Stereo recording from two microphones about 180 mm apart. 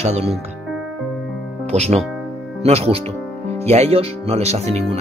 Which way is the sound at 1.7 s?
40° right (ahead or behind).